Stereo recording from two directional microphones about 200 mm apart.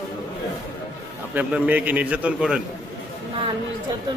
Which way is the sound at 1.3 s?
10° right (ahead or behind).